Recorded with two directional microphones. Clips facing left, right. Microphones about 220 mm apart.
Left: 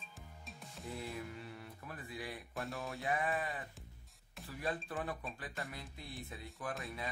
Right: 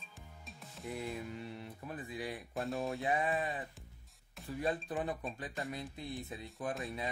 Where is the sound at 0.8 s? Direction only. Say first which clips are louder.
Right 3 dB; 20° right (ahead or behind).